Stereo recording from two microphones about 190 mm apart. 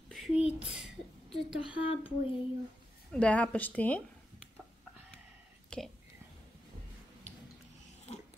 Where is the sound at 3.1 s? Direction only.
5° left (ahead or behind).